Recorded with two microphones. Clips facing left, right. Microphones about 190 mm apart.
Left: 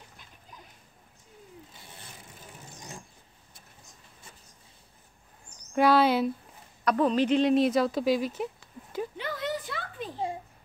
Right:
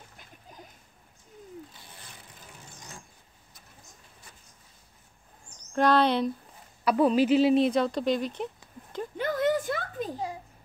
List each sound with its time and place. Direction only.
5.8 s speech: 5° left (ahead or behind)
6.8 s speech: 5° right (ahead or behind)
9.1 s a sound: 50° right (ahead or behind)